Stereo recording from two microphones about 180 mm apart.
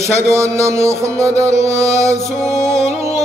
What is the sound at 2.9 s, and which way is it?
Music, 15° right (ahead or behind).